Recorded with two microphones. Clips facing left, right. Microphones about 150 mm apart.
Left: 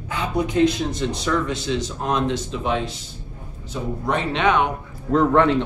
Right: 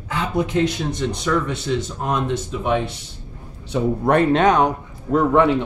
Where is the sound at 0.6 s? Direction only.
60° right (ahead or behind).